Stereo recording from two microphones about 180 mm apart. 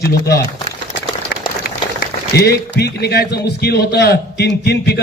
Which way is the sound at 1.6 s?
60° left (ahead or behind).